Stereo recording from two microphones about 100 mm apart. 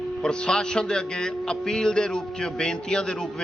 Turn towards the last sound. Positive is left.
turn(degrees=10)  # may be behind; listen again after turning